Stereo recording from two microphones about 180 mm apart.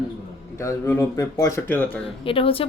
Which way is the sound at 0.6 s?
15° left (ahead or behind).